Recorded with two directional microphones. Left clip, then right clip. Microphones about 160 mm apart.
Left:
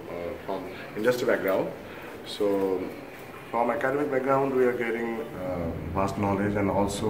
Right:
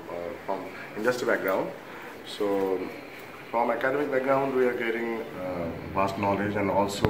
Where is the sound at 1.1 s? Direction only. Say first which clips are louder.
Left 1 dB; 25° left (ahead or behind).